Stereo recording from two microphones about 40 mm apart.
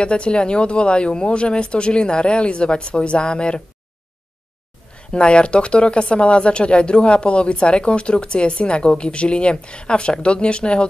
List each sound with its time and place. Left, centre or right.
0.0 s speech: left
4.9 s speech: left